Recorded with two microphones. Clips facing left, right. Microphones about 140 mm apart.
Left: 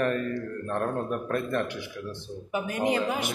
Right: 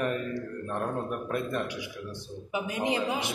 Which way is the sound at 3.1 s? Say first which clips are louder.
Left 2 dB; 55° left (ahead or behind).